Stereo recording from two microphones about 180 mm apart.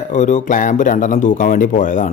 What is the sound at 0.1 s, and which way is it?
Speech, 40° left (ahead or behind).